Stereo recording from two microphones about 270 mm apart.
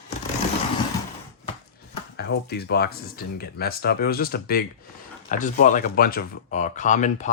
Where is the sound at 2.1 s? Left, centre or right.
Left.